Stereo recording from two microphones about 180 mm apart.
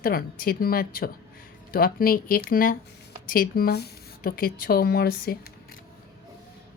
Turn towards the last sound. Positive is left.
turn(degrees=60)  # may be behind; listen again after turning